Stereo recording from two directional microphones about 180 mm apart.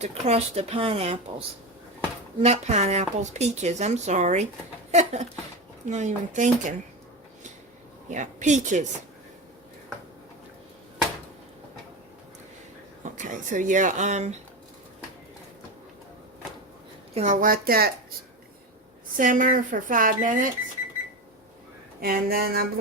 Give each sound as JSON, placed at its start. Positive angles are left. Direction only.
{"t": 0.0, "sound": "speech", "side_deg": -35}
{"t": 8.1, "sound": "speech", "side_deg": -40}
{"t": 13.1, "sound": "speech", "side_deg": -45}
{"t": 17.2, "sound": "speech", "side_deg": -45}
{"t": 19.1, "sound": "speech", "side_deg": -50}
{"t": 22.0, "sound": "a sound", "side_deg": -55}